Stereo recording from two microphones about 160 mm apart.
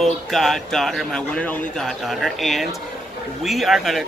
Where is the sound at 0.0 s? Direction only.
Centre (ahead or behind).